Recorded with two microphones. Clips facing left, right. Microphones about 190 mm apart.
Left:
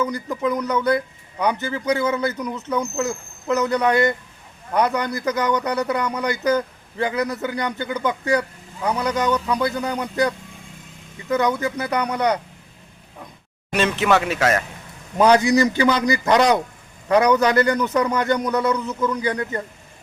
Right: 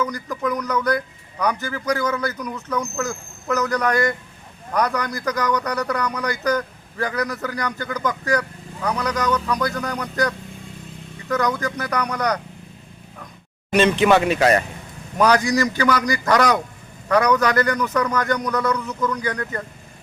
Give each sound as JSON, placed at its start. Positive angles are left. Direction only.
{"t": 0.1, "sound": "speech", "side_deg": 25}
{"t": 13.7, "sound": "a man's voice", "side_deg": 0}
{"t": 15.2, "sound": "speech", "side_deg": 20}